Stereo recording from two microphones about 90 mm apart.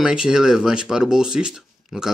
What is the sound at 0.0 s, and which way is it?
Speech, 10° right (ahead or behind).